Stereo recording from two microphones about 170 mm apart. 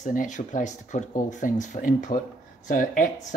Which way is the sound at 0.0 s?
50° left (ahead or behind).